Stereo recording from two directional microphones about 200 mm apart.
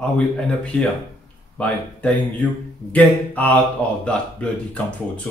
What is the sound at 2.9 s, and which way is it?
Speech, 10° left (ahead or behind).